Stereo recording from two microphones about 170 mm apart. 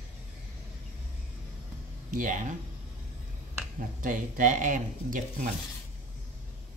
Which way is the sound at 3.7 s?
50° right (ahead or behind).